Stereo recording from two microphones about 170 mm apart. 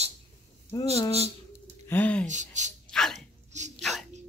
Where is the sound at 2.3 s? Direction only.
45° right (ahead or behind).